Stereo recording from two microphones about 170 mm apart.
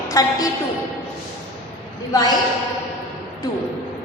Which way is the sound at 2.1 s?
20° left (ahead or behind).